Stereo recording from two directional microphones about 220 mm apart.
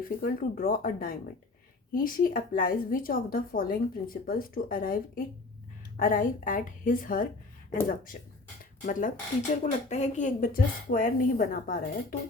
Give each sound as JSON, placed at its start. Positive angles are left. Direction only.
{"t": 0.0, "sound": "speech", "side_deg": 40}